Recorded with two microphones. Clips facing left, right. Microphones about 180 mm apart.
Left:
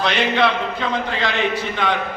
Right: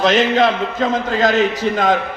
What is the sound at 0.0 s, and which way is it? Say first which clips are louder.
A man's voice: right 5 dB; 45° right (ahead or behind).